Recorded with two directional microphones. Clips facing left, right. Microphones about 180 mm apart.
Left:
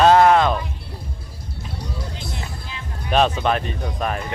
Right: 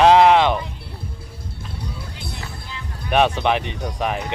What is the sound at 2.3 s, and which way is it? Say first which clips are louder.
Music: left 1 dB; 20° left (ahead or behind).